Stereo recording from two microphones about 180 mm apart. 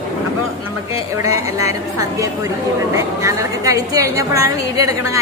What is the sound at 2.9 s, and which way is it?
A woman's voice, 15° right (ahead or behind).